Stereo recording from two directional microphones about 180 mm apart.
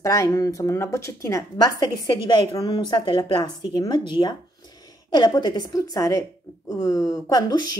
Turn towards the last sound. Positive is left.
turn(degrees=20)  # may be behind; listen again after turning